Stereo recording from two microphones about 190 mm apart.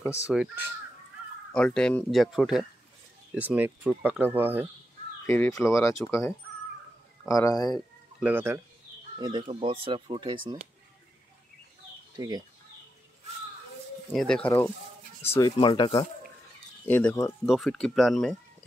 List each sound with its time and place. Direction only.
0.1 s speech: 5° right (ahead or behind)
1.5 s speech: 5° left (ahead or behind)
5.2 s speech: 15° left (ahead or behind)
7.3 s speech: 20° left (ahead or behind)
8.2 s speech: 10° right (ahead or behind)
9.2 s speech: 25° right (ahead or behind)
12.2 s speech: 20° right (ahead or behind)
14.1 s speech: 5° left (ahead or behind)
15.3 s speech: 20° left (ahead or behind)
16.8 s speech: 10° left (ahead or behind)